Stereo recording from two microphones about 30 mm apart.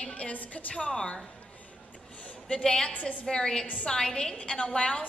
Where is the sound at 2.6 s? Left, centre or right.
Left.